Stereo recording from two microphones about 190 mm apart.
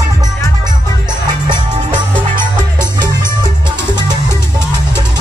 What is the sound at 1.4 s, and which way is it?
Music, 25° right (ahead or behind).